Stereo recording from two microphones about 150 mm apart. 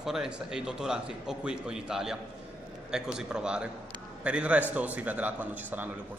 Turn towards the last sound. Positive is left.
turn(degrees=-10)  # may be behind; listen again after turning